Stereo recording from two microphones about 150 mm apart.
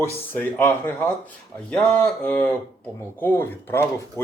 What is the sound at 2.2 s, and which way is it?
Speech, 10° left (ahead or behind).